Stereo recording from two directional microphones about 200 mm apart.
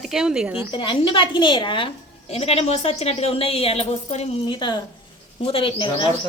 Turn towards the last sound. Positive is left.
turn(degrees=25)  # may be behind; listen again after turning